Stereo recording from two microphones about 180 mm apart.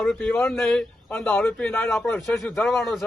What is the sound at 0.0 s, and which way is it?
A man's voice, 5° left (ahead or behind).